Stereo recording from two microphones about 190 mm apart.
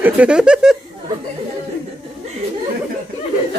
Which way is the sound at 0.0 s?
5° right (ahead or behind).